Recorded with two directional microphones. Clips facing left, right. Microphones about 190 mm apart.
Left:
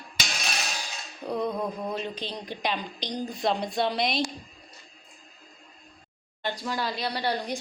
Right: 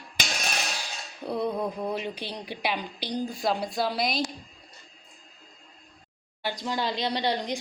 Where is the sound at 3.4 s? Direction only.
5° right (ahead or behind).